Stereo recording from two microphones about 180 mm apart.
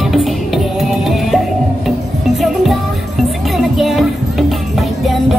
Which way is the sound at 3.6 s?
Centre (ahead or behind).